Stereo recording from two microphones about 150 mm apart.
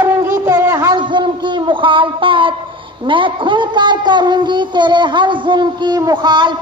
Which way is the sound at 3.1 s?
35° right (ahead or behind).